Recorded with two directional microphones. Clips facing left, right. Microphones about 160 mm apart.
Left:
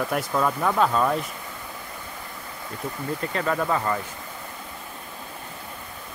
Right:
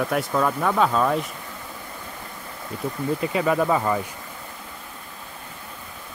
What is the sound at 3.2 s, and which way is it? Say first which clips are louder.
Speech: right 4 dB; 10° right (ahead or behind).